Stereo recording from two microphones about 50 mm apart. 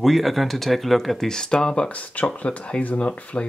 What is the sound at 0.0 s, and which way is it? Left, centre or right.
Speech, centre.